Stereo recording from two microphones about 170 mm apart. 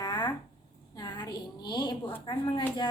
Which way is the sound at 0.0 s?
25° left (ahead or behind).